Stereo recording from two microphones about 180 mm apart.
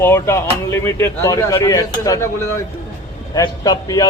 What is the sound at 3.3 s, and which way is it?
Speech, 20° left (ahead or behind).